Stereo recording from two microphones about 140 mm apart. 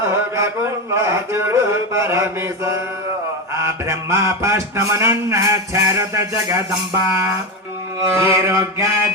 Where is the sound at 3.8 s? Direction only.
20° right (ahead or behind).